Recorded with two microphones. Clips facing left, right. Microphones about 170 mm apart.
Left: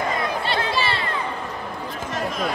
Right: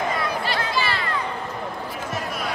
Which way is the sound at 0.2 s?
25° left (ahead or behind).